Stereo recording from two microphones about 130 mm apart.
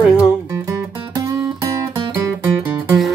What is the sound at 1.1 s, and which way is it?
Music, 30° right (ahead or behind).